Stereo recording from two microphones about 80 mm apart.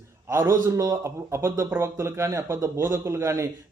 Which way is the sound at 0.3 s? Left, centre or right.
Right.